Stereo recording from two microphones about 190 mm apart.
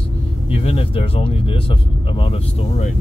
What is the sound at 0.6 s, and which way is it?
Speech, 30° left (ahead or behind).